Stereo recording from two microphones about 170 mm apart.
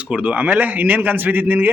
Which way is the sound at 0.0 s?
10° right (ahead or behind).